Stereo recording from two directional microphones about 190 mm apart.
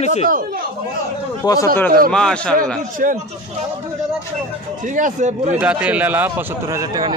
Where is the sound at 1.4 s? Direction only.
20° left (ahead or behind).